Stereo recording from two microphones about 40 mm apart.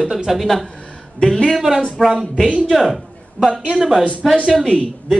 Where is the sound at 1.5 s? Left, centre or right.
Centre.